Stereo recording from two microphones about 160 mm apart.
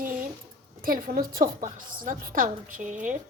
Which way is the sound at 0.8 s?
60° right (ahead or behind).